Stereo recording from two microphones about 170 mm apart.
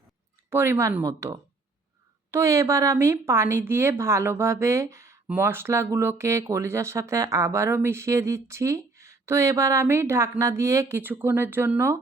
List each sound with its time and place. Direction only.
0.5 s speech: 15° right (ahead or behind)